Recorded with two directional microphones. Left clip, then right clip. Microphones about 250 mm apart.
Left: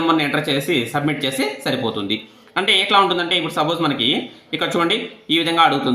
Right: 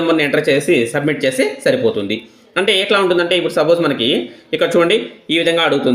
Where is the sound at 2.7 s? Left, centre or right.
Right.